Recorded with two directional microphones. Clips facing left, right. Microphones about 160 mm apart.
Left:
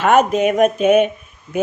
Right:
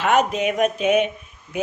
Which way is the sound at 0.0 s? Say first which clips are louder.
Left 5 dB; 50° left (ahead or behind).